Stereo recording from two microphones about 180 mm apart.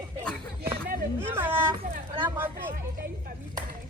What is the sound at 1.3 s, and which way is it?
Speech, 10° right (ahead or behind).